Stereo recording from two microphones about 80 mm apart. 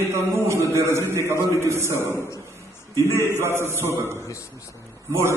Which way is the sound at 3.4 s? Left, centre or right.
Right.